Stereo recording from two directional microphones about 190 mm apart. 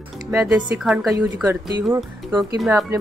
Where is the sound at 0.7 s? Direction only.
5° right (ahead or behind).